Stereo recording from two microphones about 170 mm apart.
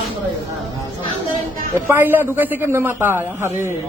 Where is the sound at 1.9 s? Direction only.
10° right (ahead or behind).